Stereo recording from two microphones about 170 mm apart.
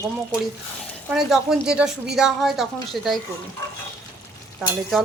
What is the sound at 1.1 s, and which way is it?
A woman's voice, 5° right (ahead or behind).